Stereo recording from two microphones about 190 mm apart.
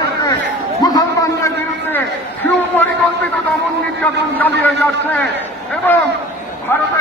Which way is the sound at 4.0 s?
10° left (ahead or behind).